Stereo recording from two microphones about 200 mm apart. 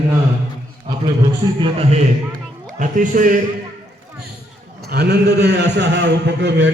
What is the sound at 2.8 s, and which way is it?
Speech, 40° right (ahead or behind).